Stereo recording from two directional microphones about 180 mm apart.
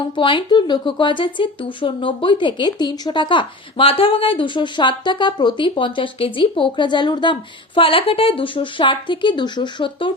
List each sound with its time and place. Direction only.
0.2 s speech: 25° left (ahead or behind)